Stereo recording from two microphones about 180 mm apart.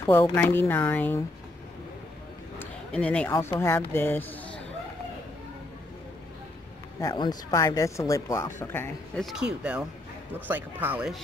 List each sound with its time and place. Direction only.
0.0 s speech: 15° left (ahead or behind)
2.6 s speech: 5° left (ahead or behind)
7.0 s speech: 20° left (ahead or behind)
9.2 s speech: centre (ahead or behind)